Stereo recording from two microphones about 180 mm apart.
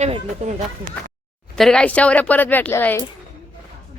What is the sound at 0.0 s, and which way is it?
Speech, 40° right (ahead or behind).